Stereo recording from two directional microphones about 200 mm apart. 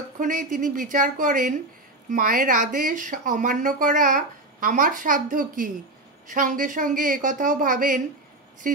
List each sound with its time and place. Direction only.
0.2 s speech: 40° right (ahead or behind)